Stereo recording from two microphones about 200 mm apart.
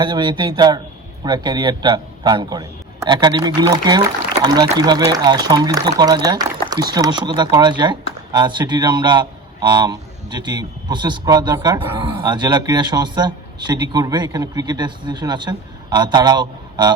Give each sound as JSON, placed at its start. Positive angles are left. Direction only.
{"t": 0.0, "sound": "a man's voice", "side_deg": -25}